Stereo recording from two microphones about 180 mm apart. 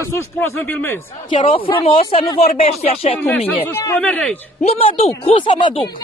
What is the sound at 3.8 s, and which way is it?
Speech, 10° left (ahead or behind).